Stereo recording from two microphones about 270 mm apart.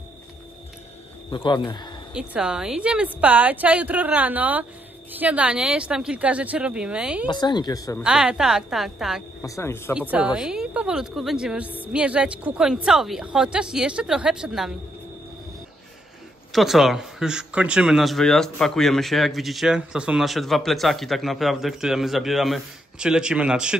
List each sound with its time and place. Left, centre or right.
1.3 s speech: centre
2.1 s speech: centre
7.2 s speech: centre
8.0 s speech: centre
9.4 s speech: centre
10.1 s speech: centre
16.5 s speech: centre